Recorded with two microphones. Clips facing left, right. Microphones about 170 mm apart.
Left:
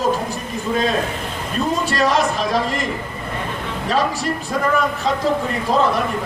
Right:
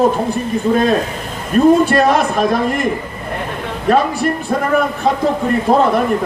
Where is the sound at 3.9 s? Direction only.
55° right (ahead or behind).